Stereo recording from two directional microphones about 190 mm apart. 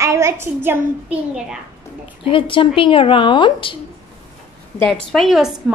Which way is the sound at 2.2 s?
30° left (ahead or behind).